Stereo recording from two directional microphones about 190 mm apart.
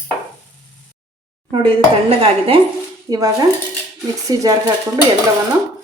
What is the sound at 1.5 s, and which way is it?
Speech, 30° right (ahead or behind).